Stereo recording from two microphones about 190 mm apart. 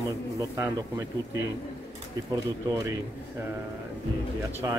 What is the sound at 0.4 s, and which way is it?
Speech, 15° right (ahead or behind).